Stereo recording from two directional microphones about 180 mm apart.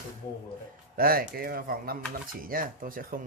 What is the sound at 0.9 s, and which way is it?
Speech, 55° right (ahead or behind).